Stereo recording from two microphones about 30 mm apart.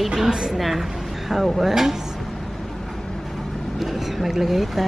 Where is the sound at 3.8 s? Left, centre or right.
Centre.